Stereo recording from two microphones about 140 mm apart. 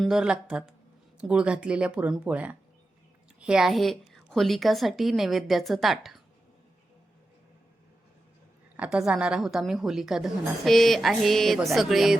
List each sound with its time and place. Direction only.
0.0 s a woman's voice: 5° right (ahead or behind)
8.7 s a woman's voice: 10° right (ahead or behind)